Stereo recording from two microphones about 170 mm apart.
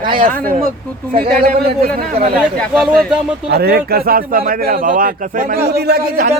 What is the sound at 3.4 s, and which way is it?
A man's voice, 70° right (ahead or behind).